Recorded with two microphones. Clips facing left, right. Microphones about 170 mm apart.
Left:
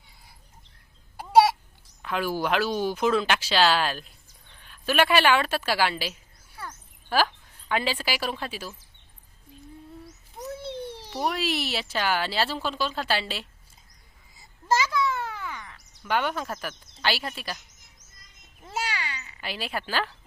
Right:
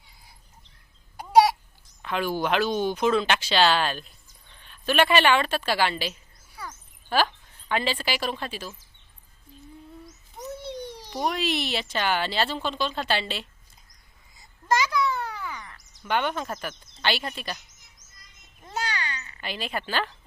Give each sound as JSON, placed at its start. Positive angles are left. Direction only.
{"t": 1.1, "sound": "babbling", "side_deg": 5}
{"t": 2.0, "sound": "a woman's voice", "side_deg": 5}
{"t": 6.6, "sound": "a sound", "side_deg": 0}
{"t": 7.7, "sound": "a woman's voice", "side_deg": 5}
{"t": 10.3, "sound": "a child's voice", "side_deg": 5}
{"t": 14.7, "sound": "a sound", "side_deg": 0}
{"t": 18.6, "sound": "meow", "side_deg": 5}